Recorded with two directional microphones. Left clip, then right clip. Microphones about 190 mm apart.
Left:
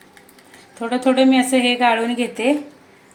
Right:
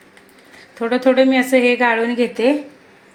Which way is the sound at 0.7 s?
20° right (ahead or behind).